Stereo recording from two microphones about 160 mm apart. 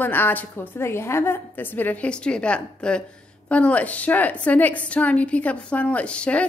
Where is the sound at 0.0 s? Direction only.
10° left (ahead or behind).